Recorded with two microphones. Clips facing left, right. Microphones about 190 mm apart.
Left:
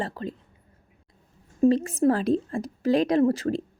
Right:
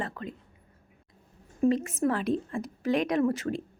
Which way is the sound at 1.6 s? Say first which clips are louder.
Left 5 dB; 35° left (ahead or behind).